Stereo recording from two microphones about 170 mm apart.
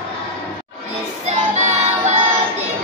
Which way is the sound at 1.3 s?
45° right (ahead or behind).